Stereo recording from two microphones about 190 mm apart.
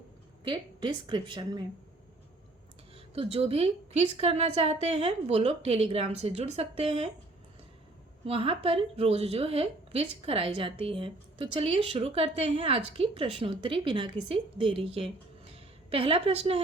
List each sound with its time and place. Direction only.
0.4 s a woman's voice: 25° right (ahead or behind)
2.9 s a woman's voice: 30° right (ahead or behind)
8.2 s a woman's voice: 30° right (ahead or behind)